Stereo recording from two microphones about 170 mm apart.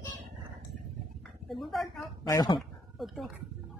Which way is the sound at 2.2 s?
20° left (ahead or behind).